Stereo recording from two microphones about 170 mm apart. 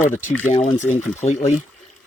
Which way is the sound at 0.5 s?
40° left (ahead or behind).